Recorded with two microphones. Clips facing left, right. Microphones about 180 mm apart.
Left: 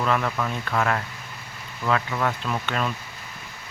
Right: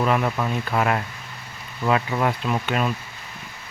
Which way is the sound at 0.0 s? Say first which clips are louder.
Right 3 dB; 15° right (ahead or behind).